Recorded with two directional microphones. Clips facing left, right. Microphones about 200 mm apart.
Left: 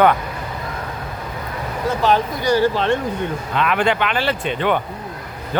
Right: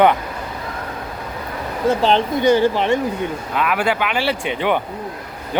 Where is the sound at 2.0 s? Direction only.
25° right (ahead or behind).